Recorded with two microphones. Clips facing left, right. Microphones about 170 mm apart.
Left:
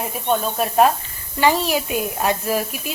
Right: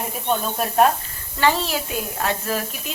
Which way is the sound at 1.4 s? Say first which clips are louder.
Left 3 dB; 15° left (ahead or behind).